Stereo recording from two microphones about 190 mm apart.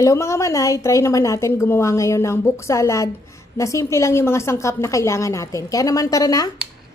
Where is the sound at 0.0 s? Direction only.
15° left (ahead or behind).